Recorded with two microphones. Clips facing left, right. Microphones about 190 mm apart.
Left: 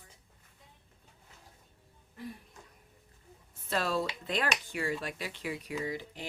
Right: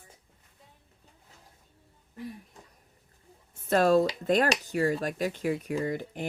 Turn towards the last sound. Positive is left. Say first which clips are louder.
# right 6 dB
turn(degrees=-50)  # may be behind; listen again after turning